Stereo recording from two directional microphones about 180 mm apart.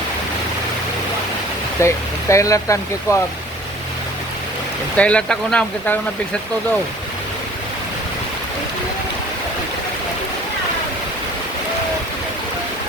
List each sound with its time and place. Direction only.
1.8 s speech: 15° left (ahead or behind)
4.9 s speech: 5° left (ahead or behind)